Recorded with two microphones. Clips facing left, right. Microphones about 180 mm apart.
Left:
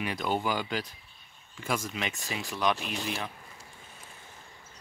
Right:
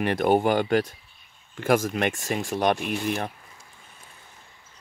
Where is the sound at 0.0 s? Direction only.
60° right (ahead or behind).